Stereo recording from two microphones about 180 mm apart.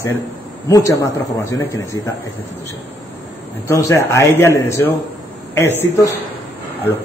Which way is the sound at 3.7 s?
15° left (ahead or behind).